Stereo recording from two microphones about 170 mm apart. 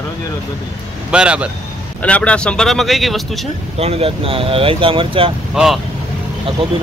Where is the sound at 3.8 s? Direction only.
35° right (ahead or behind).